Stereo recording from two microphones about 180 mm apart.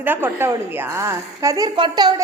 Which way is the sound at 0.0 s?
10° right (ahead or behind).